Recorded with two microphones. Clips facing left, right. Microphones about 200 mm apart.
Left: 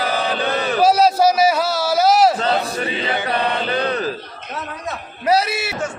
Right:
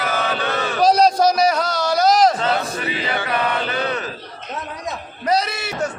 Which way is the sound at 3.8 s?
35° left (ahead or behind).